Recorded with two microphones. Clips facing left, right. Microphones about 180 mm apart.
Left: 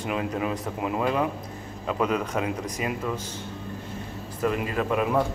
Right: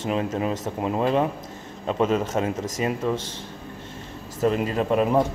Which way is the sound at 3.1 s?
90° right.